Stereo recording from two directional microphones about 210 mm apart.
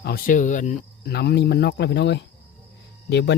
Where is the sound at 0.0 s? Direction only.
45° left (ahead or behind).